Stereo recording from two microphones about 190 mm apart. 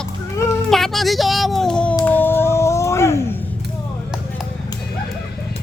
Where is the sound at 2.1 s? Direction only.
10° left (ahead or behind).